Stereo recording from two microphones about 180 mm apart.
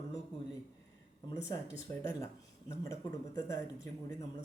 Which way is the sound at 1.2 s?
20° left (ahead or behind).